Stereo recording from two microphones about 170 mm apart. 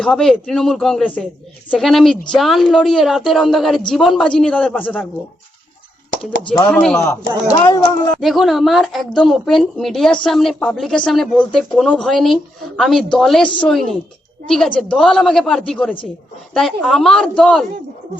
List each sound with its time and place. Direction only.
0.0 s a woman's voice: 5° left (ahead or behind)
6.7 s a woman's voice: 5° left (ahead or behind)
7.0 s speech: 20° left (ahead or behind)
8.2 s a woman's voice: centre (ahead or behind)